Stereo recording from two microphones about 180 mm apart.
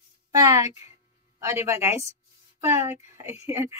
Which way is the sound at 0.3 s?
20° right (ahead or behind).